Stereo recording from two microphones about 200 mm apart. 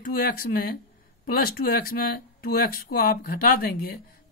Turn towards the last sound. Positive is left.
turn(degrees=45)  # may be behind; listen again after turning